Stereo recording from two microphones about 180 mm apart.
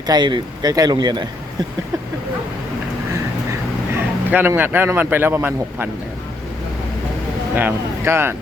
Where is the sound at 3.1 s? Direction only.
15° right (ahead or behind).